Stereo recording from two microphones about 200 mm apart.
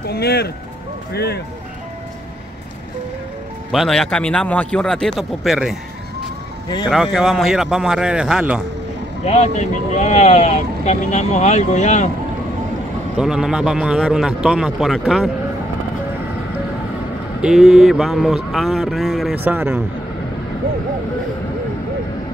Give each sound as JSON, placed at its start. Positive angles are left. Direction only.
{"t": 0.0, "sound": "speech", "side_deg": 55}
{"t": 3.7, "sound": "speech", "side_deg": 0}
{"t": 6.9, "sound": "speech", "side_deg": 0}
{"t": 9.2, "sound": "speech", "side_deg": 35}
{"t": 13.2, "sound": "speech", "side_deg": -5}
{"t": 17.4, "sound": "speech", "side_deg": 0}